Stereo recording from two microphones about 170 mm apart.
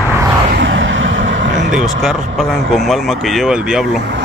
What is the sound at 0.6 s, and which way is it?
Vehicle, 90° right.